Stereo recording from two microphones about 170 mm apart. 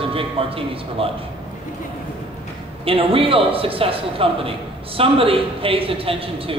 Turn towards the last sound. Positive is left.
turn(degrees=-35)  # may be behind; listen again after turning